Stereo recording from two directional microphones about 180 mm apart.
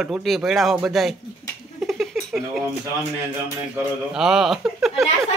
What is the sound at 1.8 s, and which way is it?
Dishes, centre (ahead or behind).